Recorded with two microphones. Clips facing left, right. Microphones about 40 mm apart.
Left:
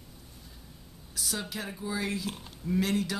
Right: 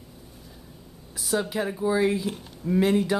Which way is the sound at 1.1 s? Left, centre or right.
Centre.